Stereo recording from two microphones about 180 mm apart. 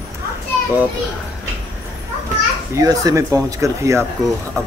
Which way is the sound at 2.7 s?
20° right (ahead or behind).